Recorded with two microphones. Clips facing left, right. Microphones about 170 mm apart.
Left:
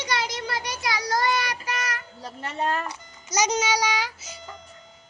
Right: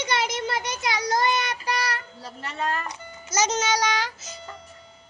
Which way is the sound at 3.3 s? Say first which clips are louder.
Even; 15° left (ahead or behind).